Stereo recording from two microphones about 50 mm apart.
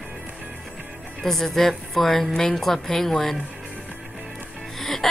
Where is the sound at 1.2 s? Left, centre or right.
Centre.